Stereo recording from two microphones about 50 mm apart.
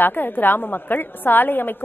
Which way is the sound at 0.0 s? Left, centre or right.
Left.